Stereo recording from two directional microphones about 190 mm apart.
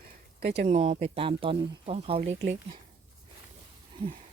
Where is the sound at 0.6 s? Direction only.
30° right (ahead or behind).